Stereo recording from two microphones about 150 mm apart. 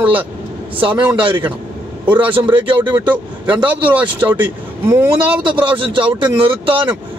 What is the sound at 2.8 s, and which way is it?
Speech, 15° right (ahead or behind).